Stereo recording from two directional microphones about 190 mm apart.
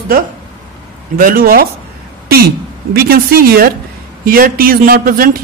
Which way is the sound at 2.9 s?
50° right (ahead or behind).